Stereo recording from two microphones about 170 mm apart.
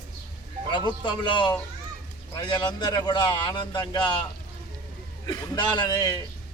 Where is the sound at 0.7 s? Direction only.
25° left (ahead or behind).